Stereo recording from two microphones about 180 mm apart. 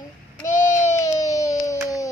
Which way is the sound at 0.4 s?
15° left (ahead or behind).